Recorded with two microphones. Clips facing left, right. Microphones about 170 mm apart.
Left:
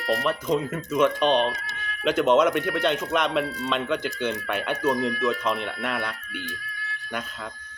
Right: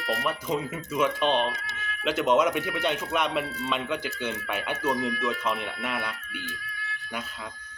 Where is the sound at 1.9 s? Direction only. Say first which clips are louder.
Left 4 dB; 45° left (ahead or behind).